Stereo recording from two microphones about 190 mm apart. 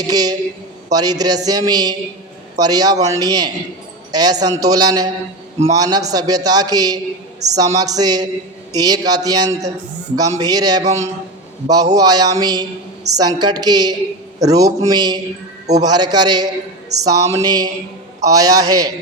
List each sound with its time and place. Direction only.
0.0 s a man's voice: 20° right (ahead or behind)